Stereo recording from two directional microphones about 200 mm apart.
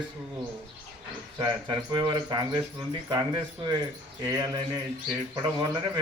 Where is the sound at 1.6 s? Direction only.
20° right (ahead or behind).